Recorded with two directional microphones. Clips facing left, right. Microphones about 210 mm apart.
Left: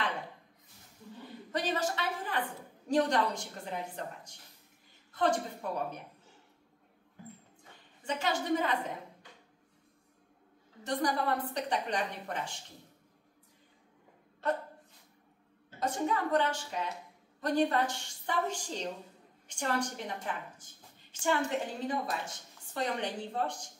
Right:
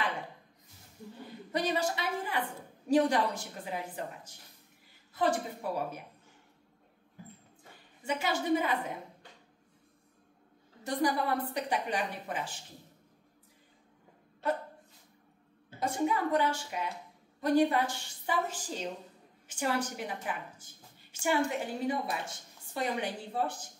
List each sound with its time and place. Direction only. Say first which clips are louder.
1.5 s a sound: right 2 dB; 10° right (ahead or behind)
2.9 s a woman's voice: right 2 dB; 5° right (ahead or behind)
8.0 s a woman's voice: right 1 dB; 10° right (ahead or behind)
10.8 s a woman's voice: right 1 dB; 10° right (ahead or behind)
15.8 s a woman's voice: right 2 dB; 10° right (ahead or behind)